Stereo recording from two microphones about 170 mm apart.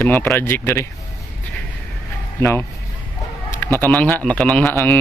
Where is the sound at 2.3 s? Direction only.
15° left (ahead or behind).